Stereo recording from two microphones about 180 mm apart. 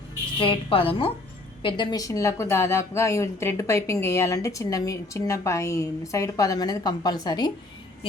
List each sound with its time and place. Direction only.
0.3 s a woman's voice: 30° left (ahead or behind)